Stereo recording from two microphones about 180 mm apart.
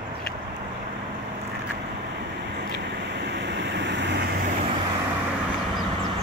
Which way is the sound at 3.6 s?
80° right.